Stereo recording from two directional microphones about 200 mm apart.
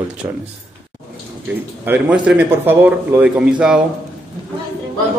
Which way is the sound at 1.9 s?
5° right (ahead or behind).